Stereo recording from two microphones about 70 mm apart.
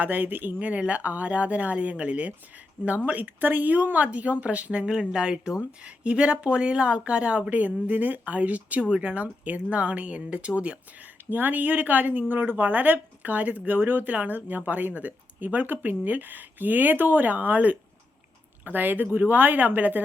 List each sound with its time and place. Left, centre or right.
0.0 s speech: right